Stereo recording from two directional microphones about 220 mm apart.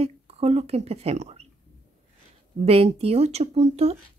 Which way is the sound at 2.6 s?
25° right (ahead or behind).